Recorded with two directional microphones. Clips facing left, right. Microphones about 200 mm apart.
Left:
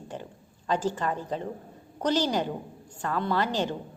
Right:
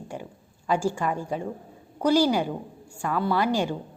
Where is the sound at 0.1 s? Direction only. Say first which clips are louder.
Right 2 dB; 10° right (ahead or behind).